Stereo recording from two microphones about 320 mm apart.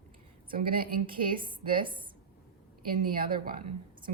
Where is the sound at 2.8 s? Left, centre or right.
Right.